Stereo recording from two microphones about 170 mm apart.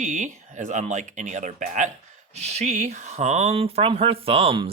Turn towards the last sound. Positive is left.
turn(degrees=-30)  # may be behind; listen again after turning